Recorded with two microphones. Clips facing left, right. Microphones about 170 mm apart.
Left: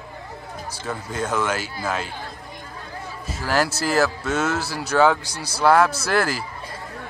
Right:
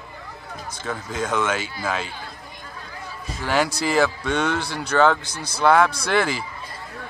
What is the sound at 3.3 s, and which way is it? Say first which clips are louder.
Speech: even; 5° left (ahead or behind).